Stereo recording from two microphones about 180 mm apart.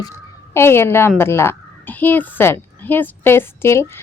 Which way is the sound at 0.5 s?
15° left (ahead or behind).